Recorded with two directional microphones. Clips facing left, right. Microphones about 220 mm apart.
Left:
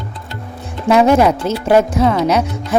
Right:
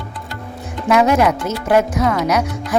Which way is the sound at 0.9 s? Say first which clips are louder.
Left 3 dB; 30° left (ahead or behind).